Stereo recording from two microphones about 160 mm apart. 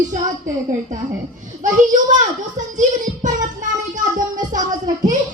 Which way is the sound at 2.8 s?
50° right (ahead or behind).